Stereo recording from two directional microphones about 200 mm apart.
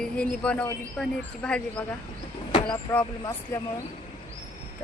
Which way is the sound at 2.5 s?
25° left (ahead or behind).